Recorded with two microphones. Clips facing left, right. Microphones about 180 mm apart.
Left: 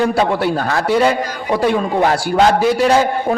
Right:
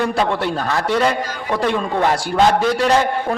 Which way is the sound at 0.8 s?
5° left (ahead or behind).